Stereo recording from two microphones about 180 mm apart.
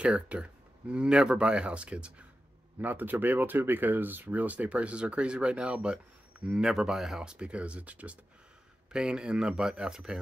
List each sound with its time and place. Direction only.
0.0 s speech: 5° right (ahead or behind)